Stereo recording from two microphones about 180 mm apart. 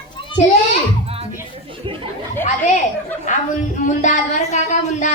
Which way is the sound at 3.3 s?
45° left (ahead or behind).